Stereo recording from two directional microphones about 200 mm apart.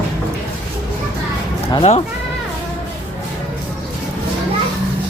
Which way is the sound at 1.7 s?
30° left (ahead or behind).